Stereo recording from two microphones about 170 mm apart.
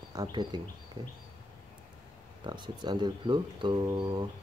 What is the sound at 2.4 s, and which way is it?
Speech, 25° right (ahead or behind).